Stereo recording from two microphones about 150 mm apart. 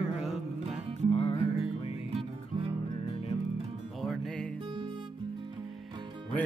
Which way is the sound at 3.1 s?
40° left (ahead or behind).